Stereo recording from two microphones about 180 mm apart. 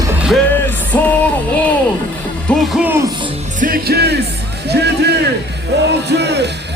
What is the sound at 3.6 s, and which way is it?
Music, 55° right (ahead or behind).